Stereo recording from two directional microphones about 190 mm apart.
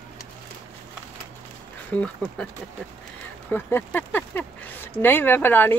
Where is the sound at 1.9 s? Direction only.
5° left (ahead or behind).